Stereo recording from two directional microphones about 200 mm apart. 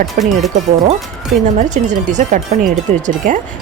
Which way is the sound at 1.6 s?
40° right (ahead or behind).